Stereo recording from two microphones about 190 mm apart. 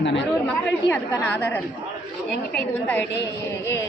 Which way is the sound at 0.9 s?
10° left (ahead or behind).